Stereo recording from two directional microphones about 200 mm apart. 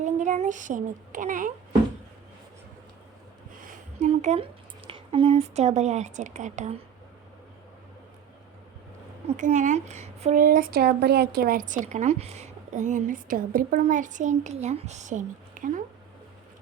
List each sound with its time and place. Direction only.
0.0 s speech: 35° right (ahead or behind)
4.0 s a woman's voice: 35° right (ahead or behind)
9.2 s a woman's voice: 35° right (ahead or behind)